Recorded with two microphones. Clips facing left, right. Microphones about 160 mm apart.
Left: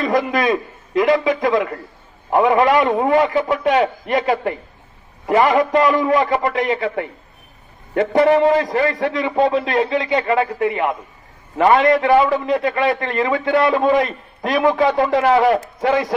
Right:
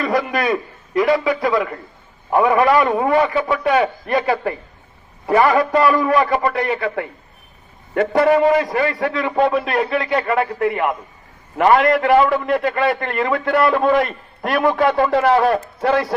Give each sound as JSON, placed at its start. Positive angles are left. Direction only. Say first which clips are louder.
{"t": 0.0, "sound": "a man's voice", "louder": "left 2 dB", "side_deg": 20}
{"t": 2.3, "sound": "a man's voice", "louder": "even", "side_deg": 20}